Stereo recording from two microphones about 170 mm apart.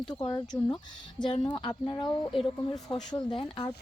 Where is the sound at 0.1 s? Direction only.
25° left (ahead or behind).